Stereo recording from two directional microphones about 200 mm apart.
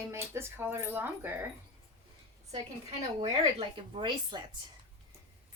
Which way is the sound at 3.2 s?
25° right (ahead or behind).